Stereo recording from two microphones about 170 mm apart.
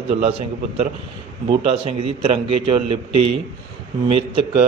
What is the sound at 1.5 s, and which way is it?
A man's voice, 30° right (ahead or behind).